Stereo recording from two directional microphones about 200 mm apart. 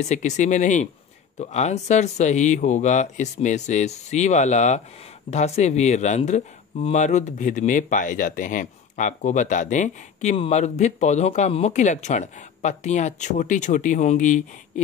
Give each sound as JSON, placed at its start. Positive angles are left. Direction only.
{"t": 0.0, "sound": "speech", "side_deg": 35}